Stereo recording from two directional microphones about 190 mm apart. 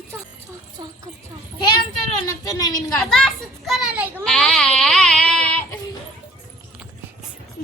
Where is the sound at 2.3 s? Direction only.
20° left (ahead or behind).